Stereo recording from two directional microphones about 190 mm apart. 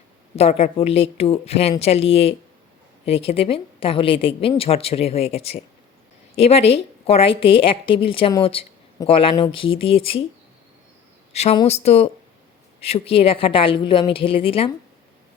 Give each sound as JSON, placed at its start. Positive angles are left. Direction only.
{"t": 0.3, "sound": "a woman's voice", "side_deg": 30}
{"t": 11.5, "sound": "a woman's voice", "side_deg": 30}